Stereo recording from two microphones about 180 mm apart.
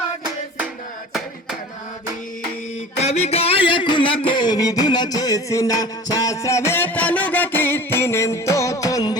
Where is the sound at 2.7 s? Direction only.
35° left (ahead or behind).